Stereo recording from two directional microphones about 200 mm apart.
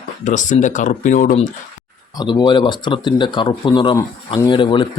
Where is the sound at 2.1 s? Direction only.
20° left (ahead or behind).